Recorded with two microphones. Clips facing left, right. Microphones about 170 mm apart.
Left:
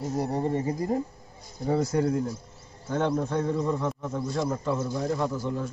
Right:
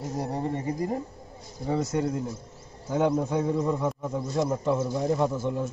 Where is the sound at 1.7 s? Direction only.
Centre (ahead or behind).